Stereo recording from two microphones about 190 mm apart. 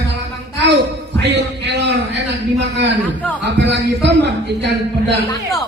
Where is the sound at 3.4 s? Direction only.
65° right (ahead or behind).